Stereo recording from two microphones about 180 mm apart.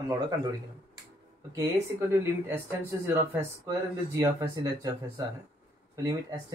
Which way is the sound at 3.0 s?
15° right (ahead or behind).